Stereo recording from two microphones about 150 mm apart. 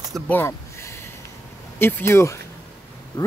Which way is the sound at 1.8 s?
15° left (ahead or behind).